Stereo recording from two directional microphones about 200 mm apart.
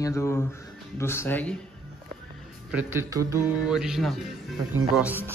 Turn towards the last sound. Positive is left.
turn(degrees=-10)  # may be behind; listen again after turning